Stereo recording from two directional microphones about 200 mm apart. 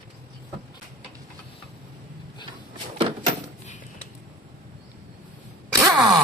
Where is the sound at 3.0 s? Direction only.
25° right (ahead or behind).